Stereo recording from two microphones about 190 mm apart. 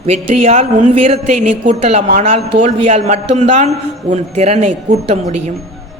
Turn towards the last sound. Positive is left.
turn(degrees=-35)  # may be behind; listen again after turning